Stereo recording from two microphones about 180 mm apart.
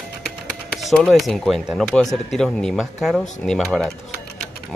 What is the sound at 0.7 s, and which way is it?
Speech, centre (ahead or behind).